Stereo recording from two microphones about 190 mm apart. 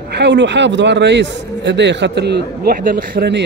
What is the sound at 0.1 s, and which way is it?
A man's voice, 65° right (ahead or behind).